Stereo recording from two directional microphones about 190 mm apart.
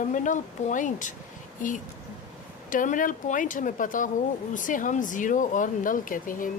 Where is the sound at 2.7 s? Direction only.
45° left (ahead or behind).